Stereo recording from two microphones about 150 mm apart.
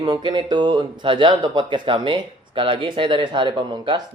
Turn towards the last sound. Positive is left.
turn(degrees=-30)  # may be behind; listen again after turning